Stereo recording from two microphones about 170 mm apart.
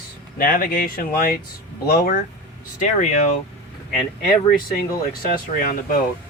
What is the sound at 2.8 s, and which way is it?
Speech, 50° left (ahead or behind).